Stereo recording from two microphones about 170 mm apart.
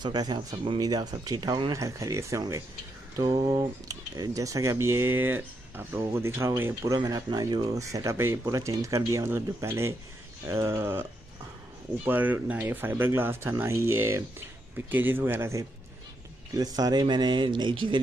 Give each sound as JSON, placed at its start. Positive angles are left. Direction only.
{"t": 0.0, "sound": "speech", "side_deg": -25}